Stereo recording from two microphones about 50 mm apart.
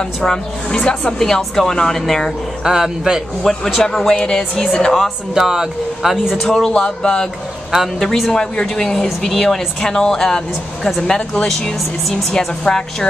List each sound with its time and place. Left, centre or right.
0.2 s speech: centre
1.2 s speech: centre
2.6 s speech: centre
3.4 s a man's voice: centre
5.3 s speech: centre
6.4 s speech: centre
8.4 s a woman's voice: centre
11.4 s speech: centre